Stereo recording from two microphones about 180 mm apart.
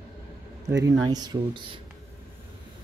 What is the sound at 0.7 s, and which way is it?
Speech, 20° right (ahead or behind).